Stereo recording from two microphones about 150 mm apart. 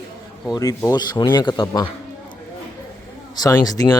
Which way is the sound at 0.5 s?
25° left (ahead or behind).